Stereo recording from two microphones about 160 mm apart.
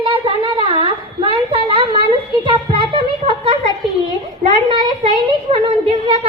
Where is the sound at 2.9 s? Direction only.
35° right (ahead or behind).